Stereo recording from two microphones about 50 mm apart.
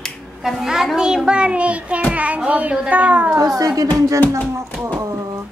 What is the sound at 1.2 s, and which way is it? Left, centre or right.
Child singing, right.